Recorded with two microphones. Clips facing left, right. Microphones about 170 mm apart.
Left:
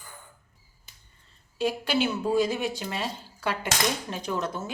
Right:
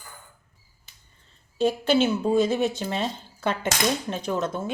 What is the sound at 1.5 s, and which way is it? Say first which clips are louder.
A woman's voice: right 5 dB; 25° right (ahead or behind).